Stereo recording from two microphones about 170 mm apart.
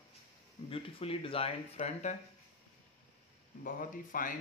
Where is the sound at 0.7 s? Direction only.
35° left (ahead or behind).